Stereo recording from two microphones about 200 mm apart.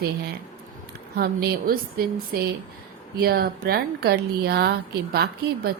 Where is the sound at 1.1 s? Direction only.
50° right (ahead or behind).